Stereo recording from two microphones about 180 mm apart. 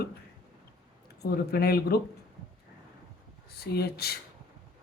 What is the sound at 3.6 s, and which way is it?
Speech, 60° left (ahead or behind).